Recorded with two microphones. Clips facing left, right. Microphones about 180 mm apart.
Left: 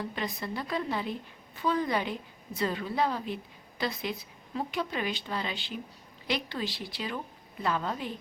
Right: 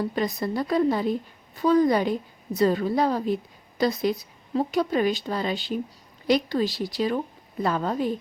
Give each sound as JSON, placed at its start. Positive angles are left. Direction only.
{"t": 0.0, "sound": "a woman's voice", "side_deg": -40}